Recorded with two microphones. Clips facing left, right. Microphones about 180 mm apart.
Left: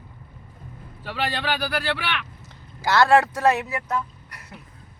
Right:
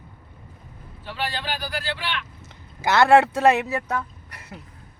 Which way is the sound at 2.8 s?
20° right (ahead or behind).